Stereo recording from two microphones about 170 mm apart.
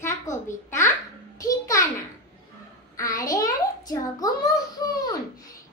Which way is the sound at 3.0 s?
20° left (ahead or behind).